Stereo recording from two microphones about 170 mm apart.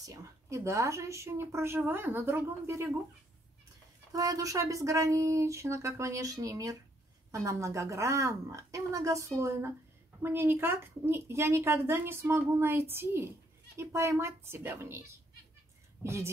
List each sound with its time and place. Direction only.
0.0 s a woman's voice: 20° right (ahead or behind)
4.1 s a woman's voice: 20° right (ahead or behind)